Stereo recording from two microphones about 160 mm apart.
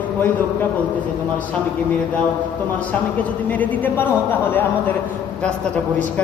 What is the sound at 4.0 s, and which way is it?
Speech, 10° left (ahead or behind).